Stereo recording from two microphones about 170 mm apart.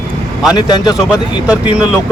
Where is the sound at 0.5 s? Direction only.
25° left (ahead or behind).